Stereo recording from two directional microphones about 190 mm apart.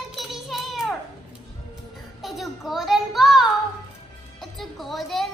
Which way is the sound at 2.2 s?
Centre (ahead or behind).